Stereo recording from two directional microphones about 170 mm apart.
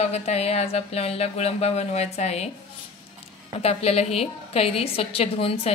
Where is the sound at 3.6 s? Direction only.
35° left (ahead or behind).